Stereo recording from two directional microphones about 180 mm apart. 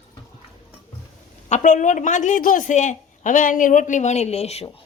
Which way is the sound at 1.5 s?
40° left (ahead or behind).